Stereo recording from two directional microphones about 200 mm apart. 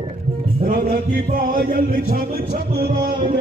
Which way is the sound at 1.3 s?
45° right (ahead or behind).